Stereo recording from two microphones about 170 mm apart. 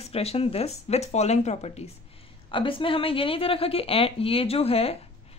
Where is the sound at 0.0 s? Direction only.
35° left (ahead or behind).